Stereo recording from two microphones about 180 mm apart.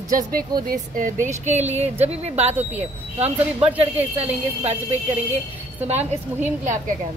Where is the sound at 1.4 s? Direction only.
40° right (ahead or behind).